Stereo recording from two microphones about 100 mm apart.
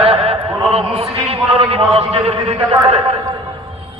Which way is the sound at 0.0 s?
85° right.